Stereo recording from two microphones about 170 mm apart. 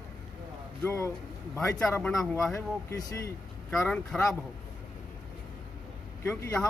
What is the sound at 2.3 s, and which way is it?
Speech, 15° left (ahead or behind).